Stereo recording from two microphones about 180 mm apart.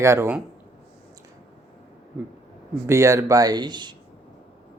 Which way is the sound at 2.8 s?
15° right (ahead or behind).